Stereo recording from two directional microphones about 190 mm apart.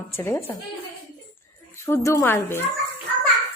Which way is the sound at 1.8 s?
15° left (ahead or behind).